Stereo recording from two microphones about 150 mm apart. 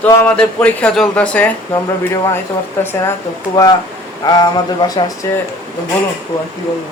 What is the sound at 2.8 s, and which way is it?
Speech, 15° left (ahead or behind).